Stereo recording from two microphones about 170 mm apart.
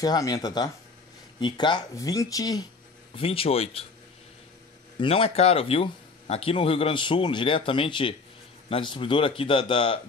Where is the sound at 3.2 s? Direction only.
35° left (ahead or behind).